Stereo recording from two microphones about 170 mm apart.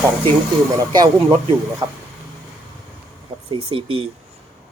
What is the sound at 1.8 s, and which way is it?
Speech, 25° right (ahead or behind).